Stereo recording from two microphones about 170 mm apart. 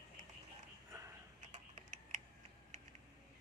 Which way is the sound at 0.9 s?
15° right (ahead or behind).